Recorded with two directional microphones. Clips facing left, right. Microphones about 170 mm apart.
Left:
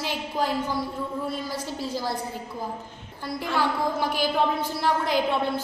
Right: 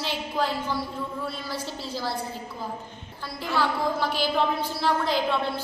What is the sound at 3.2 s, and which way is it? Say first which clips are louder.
A woman's voice: left 1 dB; 15° left (ahead or behind).